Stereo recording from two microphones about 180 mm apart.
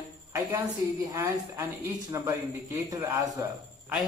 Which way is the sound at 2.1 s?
15° right (ahead or behind).